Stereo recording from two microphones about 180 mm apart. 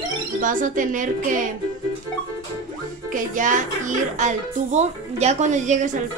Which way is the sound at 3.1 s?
45° right (ahead or behind).